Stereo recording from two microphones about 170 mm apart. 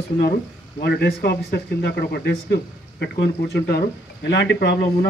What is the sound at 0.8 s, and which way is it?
Speech, 70° left (ahead or behind).